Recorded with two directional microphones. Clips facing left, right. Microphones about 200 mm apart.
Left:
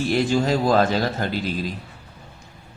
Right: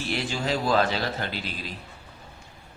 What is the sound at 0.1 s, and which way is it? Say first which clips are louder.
A man's voice: left 7 dB; 45° left (ahead or behind).